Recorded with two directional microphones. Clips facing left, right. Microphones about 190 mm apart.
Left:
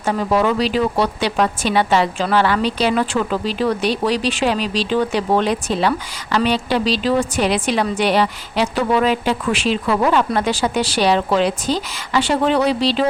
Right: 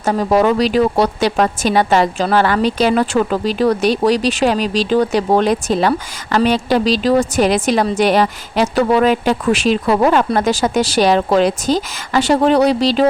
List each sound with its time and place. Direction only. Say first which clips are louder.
0.0 s speech: right 4 dB; 40° right (ahead or behind)